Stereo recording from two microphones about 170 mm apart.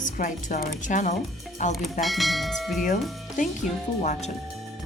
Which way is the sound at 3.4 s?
50° left (ahead or behind).